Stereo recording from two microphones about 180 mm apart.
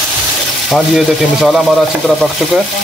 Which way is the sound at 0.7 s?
Centre (ahead or behind).